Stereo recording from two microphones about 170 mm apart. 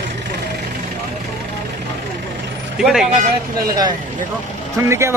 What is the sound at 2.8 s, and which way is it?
Speech, centre (ahead or behind).